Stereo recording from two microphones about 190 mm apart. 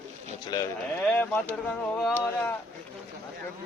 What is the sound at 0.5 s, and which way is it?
Speech, 20° left (ahead or behind).